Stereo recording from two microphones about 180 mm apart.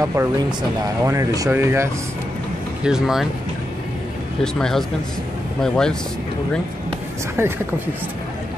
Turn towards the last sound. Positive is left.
turn(degrees=-15)  # may be behind; listen again after turning